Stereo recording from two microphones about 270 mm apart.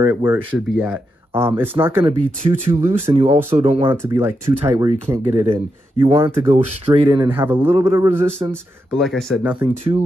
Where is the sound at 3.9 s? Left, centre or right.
Centre.